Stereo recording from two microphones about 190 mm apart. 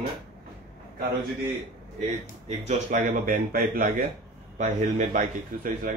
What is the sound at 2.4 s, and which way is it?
A man's voice, 40° right (ahead or behind).